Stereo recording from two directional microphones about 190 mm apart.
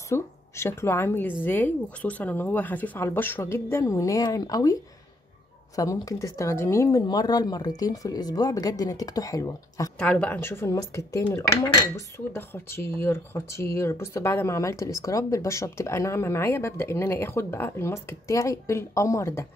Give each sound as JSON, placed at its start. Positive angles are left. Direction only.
{"t": 0.1, "sound": "a woman's voice", "side_deg": 15}
{"t": 5.8, "sound": "speech", "side_deg": 15}
{"t": 9.9, "sound": "speech", "side_deg": 5}